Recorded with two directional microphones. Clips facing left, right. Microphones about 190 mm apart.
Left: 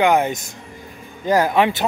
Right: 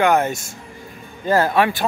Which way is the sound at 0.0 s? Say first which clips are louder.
Even; 15° left (ahead or behind).